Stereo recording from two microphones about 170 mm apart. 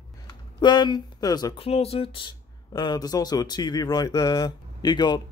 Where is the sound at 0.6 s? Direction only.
25° left (ahead or behind).